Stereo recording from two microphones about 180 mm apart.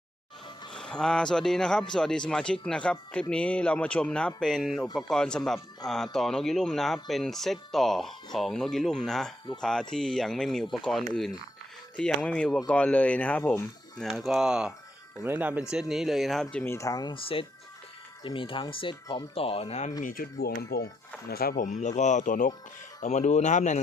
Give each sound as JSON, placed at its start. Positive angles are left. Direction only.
{"t": 0.7, "sound": "speech", "side_deg": 5}
{"t": 14.0, "sound": "speech", "side_deg": 0}
{"t": 20.0, "sound": "speech", "side_deg": 50}
{"t": 20.6, "sound": "speech", "side_deg": 65}